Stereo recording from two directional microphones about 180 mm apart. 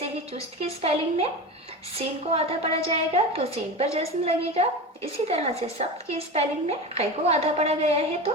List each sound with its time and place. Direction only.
0.3 s speech: 35° right (ahead or behind)